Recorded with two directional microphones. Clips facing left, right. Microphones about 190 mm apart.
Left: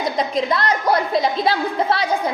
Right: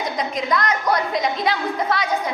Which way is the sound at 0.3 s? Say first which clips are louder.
Even; 30° left (ahead or behind).